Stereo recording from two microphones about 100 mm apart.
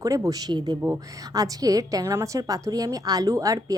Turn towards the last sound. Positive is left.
turn(degrees=-35)  # may be behind; listen again after turning